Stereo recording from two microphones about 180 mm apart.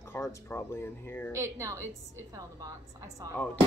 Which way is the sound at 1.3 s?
15° right (ahead or behind).